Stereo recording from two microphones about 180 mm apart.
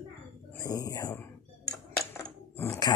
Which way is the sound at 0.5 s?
15° left (ahead or behind).